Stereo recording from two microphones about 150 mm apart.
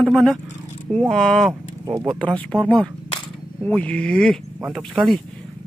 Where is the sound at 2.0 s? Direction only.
10° left (ahead or behind).